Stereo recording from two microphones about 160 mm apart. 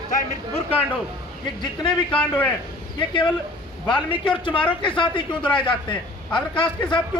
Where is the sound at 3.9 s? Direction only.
30° left (ahead or behind).